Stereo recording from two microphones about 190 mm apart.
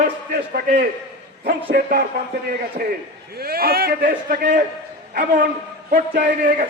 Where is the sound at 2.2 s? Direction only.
55° right (ahead or behind).